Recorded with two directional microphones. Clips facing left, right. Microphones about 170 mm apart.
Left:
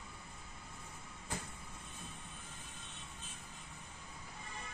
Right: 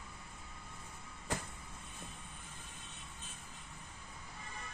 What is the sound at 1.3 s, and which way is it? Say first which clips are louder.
Vehicle: right 4 dB; 90° right.